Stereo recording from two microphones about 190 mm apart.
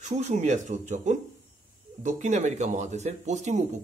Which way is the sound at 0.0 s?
40° right (ahead or behind).